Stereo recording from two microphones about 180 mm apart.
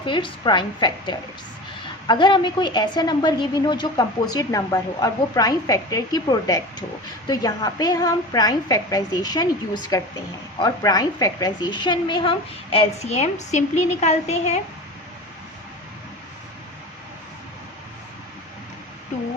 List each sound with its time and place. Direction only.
0.0 s a woman's voice: 25° left (ahead or behind)